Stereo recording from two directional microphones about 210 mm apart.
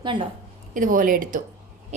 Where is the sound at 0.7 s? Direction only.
40° right (ahead or behind).